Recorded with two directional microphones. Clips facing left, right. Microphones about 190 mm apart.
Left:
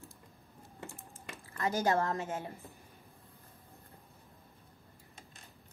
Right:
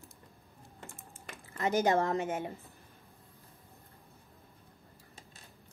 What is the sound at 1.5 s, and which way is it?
Speech, 20° right (ahead or behind).